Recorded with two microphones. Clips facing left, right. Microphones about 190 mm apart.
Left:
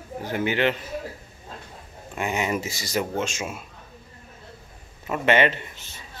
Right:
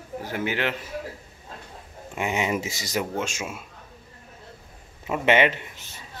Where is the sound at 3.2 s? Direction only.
10° right (ahead or behind).